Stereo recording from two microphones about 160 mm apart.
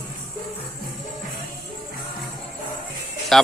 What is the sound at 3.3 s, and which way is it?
Speech, centre (ahead or behind).